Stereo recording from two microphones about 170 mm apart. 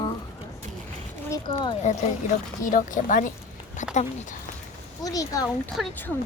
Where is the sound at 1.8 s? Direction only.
45° left (ahead or behind).